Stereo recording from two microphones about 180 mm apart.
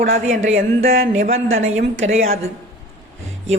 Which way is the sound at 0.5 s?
55° right (ahead or behind).